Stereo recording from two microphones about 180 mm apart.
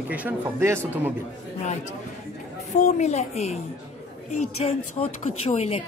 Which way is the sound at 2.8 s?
40° left (ahead or behind).